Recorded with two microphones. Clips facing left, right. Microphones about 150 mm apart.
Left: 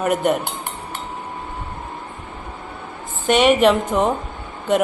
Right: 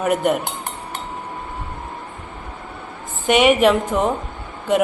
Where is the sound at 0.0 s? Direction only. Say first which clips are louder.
Even; 5° right (ahead or behind).